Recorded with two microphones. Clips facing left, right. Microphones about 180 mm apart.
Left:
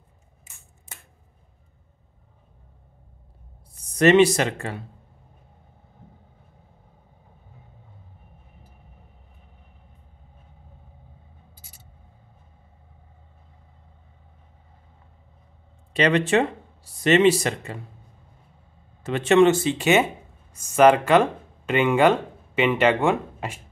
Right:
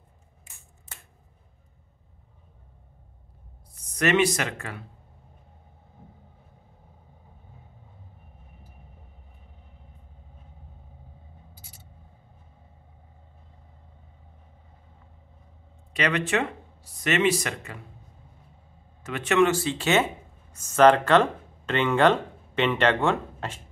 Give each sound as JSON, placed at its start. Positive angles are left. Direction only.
{"t": 3.9, "sound": "speech", "side_deg": 30}
{"t": 15.9, "sound": "speech", "side_deg": 30}
{"t": 19.0, "sound": "speech", "side_deg": 30}